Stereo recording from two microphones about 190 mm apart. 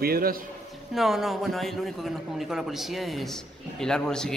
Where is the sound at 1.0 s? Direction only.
Centre (ahead or behind).